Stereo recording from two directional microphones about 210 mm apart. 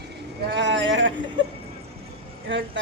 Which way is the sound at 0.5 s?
60° right (ahead or behind).